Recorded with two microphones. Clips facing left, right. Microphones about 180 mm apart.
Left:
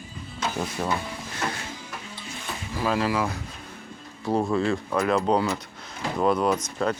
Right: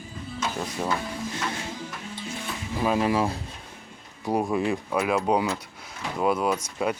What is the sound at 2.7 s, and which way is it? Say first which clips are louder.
Speech: right 1 dB; 20° right (ahead or behind).